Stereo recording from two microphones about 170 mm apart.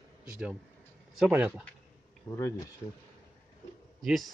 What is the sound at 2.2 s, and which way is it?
Speech, 15° left (ahead or behind).